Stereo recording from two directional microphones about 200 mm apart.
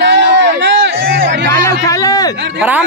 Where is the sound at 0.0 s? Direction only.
65° right (ahead or behind).